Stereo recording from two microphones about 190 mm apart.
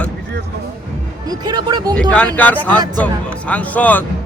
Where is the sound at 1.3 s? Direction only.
20° right (ahead or behind).